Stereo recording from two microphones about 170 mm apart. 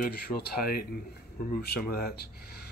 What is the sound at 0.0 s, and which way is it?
Speech, 60° left (ahead or behind).